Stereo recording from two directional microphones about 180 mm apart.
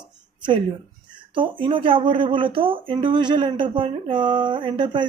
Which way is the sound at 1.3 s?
25° right (ahead or behind).